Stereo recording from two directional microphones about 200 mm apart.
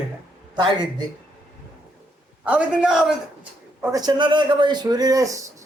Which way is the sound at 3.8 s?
20° right (ahead or behind).